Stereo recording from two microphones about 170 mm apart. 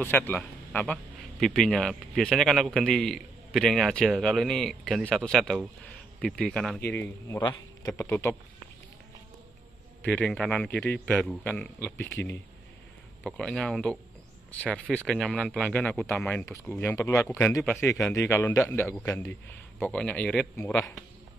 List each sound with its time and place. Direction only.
0.0 s a man's voice: 10° left (ahead or behind)
6.9 s speech: 15° left (ahead or behind)
10.0 s a man's voice: 5° left (ahead or behind)
13.2 s a man's voice: 5° left (ahead or behind)